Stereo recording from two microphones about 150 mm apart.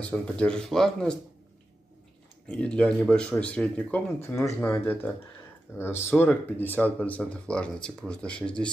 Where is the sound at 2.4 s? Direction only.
5° left (ahead or behind).